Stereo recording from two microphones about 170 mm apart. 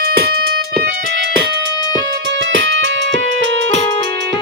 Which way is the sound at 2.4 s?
90° right.